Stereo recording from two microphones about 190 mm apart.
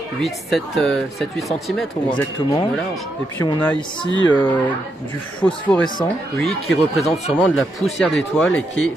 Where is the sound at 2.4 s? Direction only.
25° left (ahead or behind).